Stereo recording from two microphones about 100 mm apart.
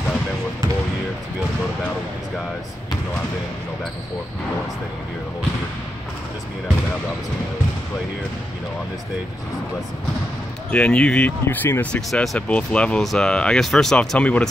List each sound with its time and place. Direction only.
10.7 s speech: 15° left (ahead or behind)
11.4 s speech: 20° left (ahead or behind)
12.1 s speech: centre (ahead or behind)
12.4 s speech: 10° left (ahead or behind)